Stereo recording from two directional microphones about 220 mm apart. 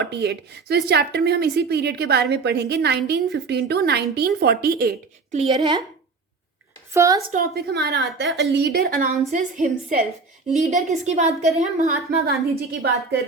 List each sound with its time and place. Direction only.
0.0 s a woman's voice: 50° right (ahead or behind)
5.4 s a woman's voice: 30° right (ahead or behind)
6.9 s a woman's voice: 15° right (ahead or behind)
7.3 s a woman's voice: 45° right (ahead or behind)
12.1 s a woman's voice: 45° right (ahead or behind)